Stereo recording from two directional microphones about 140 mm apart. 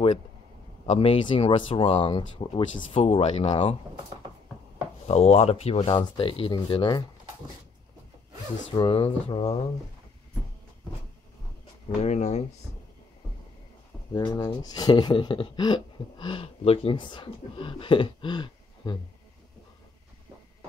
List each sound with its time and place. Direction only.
0.8 s speech: 45° left (ahead or behind)
5.0 s speech: 45° left (ahead or behind)
8.7 s speech: 40° left (ahead or behind)
12.0 s speech: 55° left (ahead or behind)
14.1 s speech: 25° left (ahead or behind)